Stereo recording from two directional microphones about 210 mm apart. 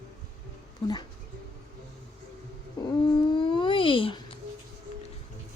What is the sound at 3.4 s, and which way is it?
Babbling, 25° left (ahead or behind).